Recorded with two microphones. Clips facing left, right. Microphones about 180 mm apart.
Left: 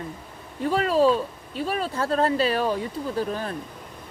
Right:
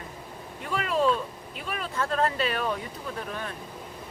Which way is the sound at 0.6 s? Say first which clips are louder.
Left 6 dB; 35° left (ahead or behind).